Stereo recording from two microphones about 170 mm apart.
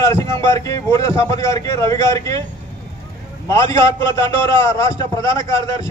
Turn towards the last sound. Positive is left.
turn(degrees=15)  # may be behind; listen again after turning